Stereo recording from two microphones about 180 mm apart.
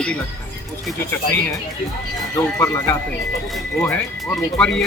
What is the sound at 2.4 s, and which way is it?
Speech, 15° left (ahead or behind).